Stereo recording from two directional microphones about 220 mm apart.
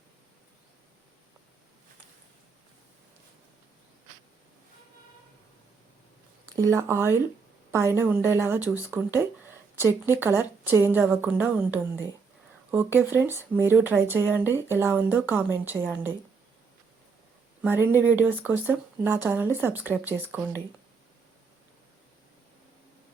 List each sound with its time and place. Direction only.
6.5 s speech: 15° right (ahead or behind)
17.6 s speech: 10° right (ahead or behind)